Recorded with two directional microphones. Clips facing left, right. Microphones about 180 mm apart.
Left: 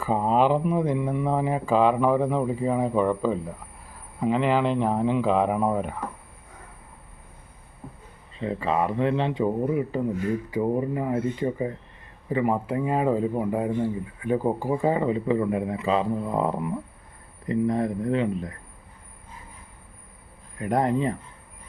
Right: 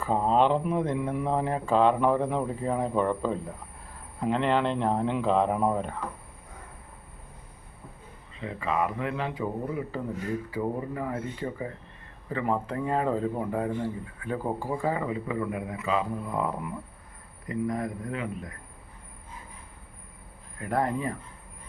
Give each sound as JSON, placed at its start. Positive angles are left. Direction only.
{"t": 0.0, "sound": "speech", "side_deg": 5}
{"t": 8.4, "sound": "speech", "side_deg": 30}
{"t": 20.6, "sound": "speech", "side_deg": 20}